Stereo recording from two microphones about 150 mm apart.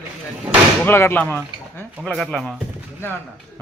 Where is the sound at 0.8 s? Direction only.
15° left (ahead or behind).